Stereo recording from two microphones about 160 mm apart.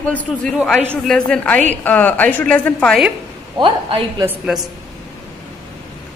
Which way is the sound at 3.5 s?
30° right (ahead or behind).